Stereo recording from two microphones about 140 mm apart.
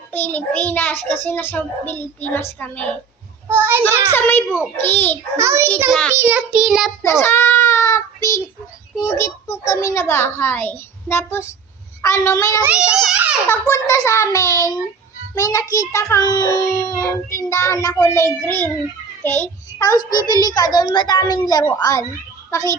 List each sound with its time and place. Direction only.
0.1 s a child's voice: 15° left (ahead or behind)
3.5 s child singing: 15° right (ahead or behind)
4.1 s a child's voice: 15° left (ahead or behind)
5.4 s a child's voice: 20° right (ahead or behind)
5.9 s a child's voice: 5° left (ahead or behind)
6.1 s child singing: 10° right (ahead or behind)
7.0 s child singing: 20° left (ahead or behind)
9.0 s a child's voice: 20° left (ahead or behind)
12.6 s a child's voice: 10° right (ahead or behind)
13.5 s a child's voice: 20° left (ahead or behind)
19.4 s a sound: 25° left (ahead or behind)
20.1 s a child's voice: 30° left (ahead or behind)